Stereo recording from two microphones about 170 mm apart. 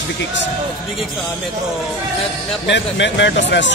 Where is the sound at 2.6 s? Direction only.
90° left.